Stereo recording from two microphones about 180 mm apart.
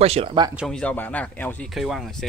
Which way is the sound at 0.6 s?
5° left (ahead or behind).